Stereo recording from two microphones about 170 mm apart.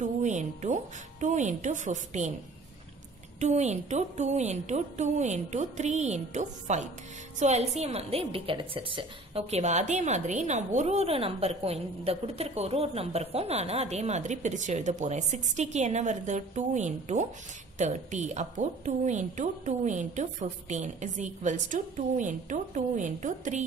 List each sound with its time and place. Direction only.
0.0 s a woman's voice: 45° right (ahead or behind)
3.3 s a woman's voice: 40° right (ahead or behind)